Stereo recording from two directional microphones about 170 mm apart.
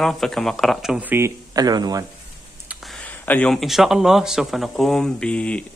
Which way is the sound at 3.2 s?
10° left (ahead or behind).